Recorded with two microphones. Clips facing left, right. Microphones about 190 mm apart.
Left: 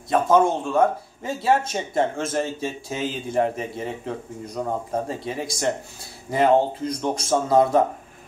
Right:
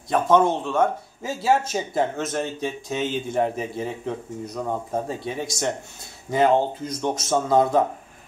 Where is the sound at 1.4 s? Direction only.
25° left (ahead or behind).